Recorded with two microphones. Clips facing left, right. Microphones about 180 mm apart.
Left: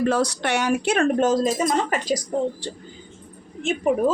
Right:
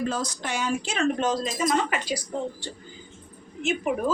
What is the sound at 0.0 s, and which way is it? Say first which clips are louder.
Speech: left 7 dB; 70° left (ahead or behind).